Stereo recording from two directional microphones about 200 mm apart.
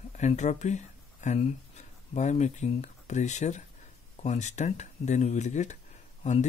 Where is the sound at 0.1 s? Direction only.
35° left (ahead or behind).